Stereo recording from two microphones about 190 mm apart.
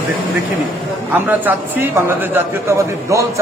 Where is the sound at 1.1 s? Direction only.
10° right (ahead or behind).